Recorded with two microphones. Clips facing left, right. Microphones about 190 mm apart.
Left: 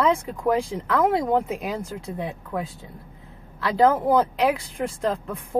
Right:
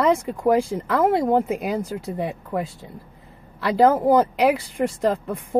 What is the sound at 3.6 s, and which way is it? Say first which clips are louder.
A woman's voice: right 2 dB; 5° right (ahead or behind).